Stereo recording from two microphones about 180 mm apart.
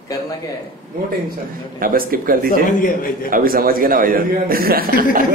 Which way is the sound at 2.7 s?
50° left (ahead or behind).